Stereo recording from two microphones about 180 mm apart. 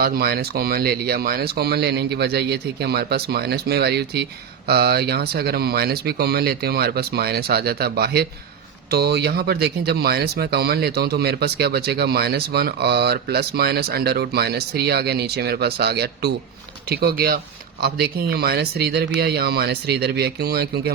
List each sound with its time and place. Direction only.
0.0 s speech: 60° right (ahead or behind)